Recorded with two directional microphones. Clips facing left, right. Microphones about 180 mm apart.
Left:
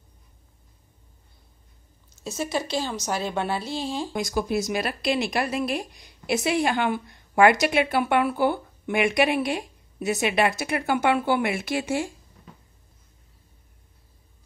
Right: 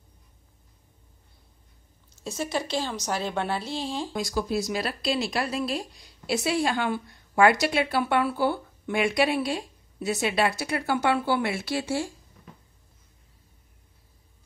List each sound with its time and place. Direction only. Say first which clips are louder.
2.2 s speech: left 2 dB; 5° left (ahead or behind)
4.1 s speech: left 2 dB; 20° left (ahead or behind)